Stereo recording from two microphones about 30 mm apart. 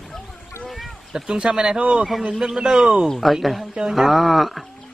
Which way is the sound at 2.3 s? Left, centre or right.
Right.